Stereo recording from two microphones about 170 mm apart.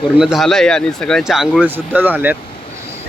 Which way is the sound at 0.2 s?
Centre (ahead or behind).